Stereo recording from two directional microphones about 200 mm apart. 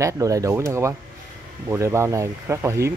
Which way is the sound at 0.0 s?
15° right (ahead or behind).